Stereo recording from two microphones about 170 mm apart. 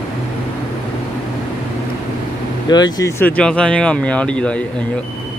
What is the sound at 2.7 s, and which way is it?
Speech, 25° left (ahead or behind).